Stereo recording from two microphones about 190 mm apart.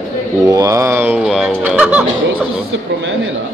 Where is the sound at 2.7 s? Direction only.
80° right.